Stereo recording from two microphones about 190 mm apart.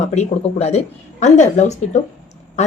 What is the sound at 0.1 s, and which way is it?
A woman's voice, 35° left (ahead or behind).